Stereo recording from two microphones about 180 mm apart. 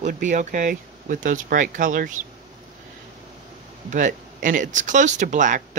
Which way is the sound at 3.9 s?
45° right (ahead or behind).